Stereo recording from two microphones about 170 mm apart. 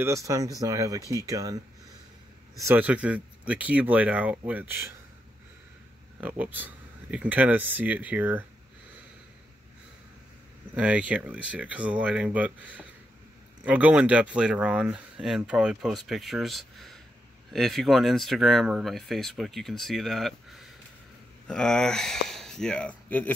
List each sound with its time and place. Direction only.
0.0 s speech: 20° right (ahead or behind)
2.6 s speech: 10° right (ahead or behind)
6.2 s speech: 10° right (ahead or behind)
10.7 s speech: 10° right (ahead or behind); by 23.3 s 10° left (ahead or behind)